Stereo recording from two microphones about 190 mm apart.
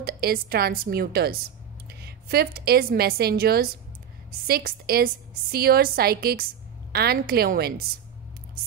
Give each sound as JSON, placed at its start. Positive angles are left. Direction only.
{"t": 0.0, "sound": "a woman's voice", "side_deg": -55}